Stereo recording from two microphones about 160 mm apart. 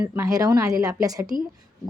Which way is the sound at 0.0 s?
15° right (ahead or behind).